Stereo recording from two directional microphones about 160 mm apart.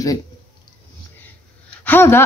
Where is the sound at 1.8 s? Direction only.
15° left (ahead or behind).